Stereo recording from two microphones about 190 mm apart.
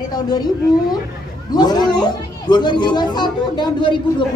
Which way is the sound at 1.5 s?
20° left (ahead or behind).